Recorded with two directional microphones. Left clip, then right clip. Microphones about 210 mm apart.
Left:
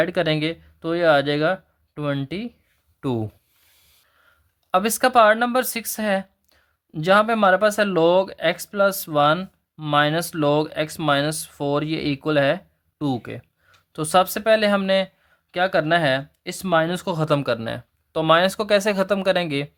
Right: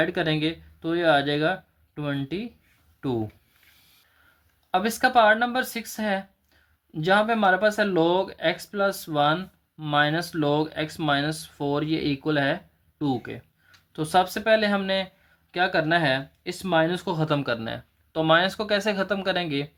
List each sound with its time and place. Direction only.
0.0 s speech: 40° left (ahead or behind)
4.7 s speech: 45° left (ahead or behind)